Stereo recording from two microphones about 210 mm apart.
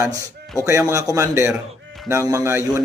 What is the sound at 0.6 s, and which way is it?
A man's voice, 15° right (ahead or behind).